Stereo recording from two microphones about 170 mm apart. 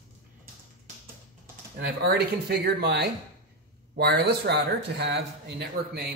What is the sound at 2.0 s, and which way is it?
Speech, 70° right (ahead or behind).